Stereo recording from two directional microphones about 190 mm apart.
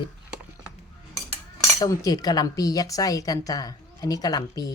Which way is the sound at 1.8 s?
20° left (ahead or behind).